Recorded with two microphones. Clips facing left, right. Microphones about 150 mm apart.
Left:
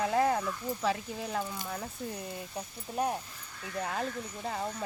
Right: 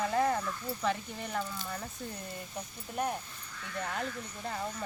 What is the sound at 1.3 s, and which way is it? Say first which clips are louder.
Speech: even; 15° left (ahead or behind).